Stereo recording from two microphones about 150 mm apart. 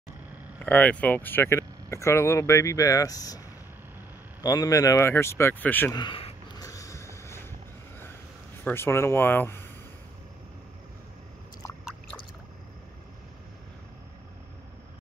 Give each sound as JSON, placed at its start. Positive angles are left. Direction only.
{"t": 0.6, "sound": "speech", "side_deg": 10}
{"t": 5.9, "sound": "speech", "side_deg": 35}
{"t": 6.6, "sound": "a sound", "side_deg": 20}
{"t": 8.6, "sound": "speech", "side_deg": 15}